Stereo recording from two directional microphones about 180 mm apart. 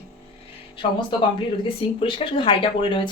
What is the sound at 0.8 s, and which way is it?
Speech, 35° left (ahead or behind).